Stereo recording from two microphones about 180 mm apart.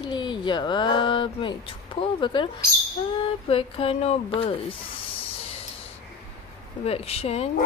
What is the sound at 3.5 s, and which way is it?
Speech, 30° left (ahead or behind).